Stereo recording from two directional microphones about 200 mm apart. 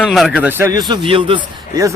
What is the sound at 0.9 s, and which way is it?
A man's voice, 25° right (ahead or behind).